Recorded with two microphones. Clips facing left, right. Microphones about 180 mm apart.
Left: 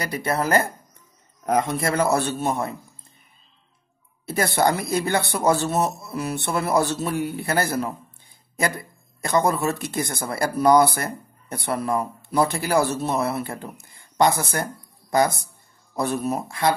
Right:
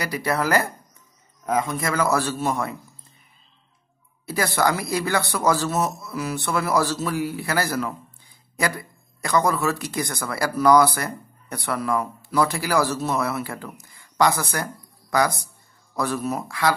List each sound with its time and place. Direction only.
0.1 s speech: 25° left (ahead or behind)
1.7 s speech: 30° left (ahead or behind)
4.8 s speech: 25° left (ahead or behind)
9.2 s speech: 25° left (ahead or behind)
13.9 s a sound: 25° left (ahead or behind)
14.4 s speech: 25° left (ahead or behind)